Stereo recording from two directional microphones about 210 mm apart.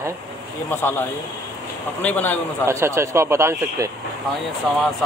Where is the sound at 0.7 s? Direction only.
10° left (ahead or behind).